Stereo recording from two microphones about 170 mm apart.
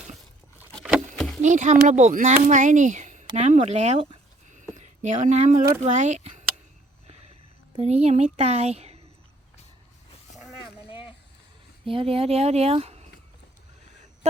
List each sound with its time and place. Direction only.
0.7 s a sound: 5° left (ahead or behind)
1.4 s speech: 45° right (ahead or behind)
7.8 s speech: 40° right (ahead or behind)
11.9 s speech: 35° right (ahead or behind)